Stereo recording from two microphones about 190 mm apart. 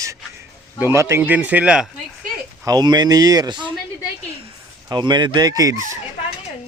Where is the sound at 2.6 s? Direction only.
20° right (ahead or behind).